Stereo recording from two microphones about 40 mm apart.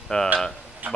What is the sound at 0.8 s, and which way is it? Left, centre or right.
Speech, right.